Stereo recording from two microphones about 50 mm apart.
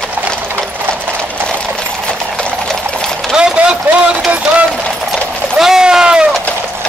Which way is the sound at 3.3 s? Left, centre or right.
Centre.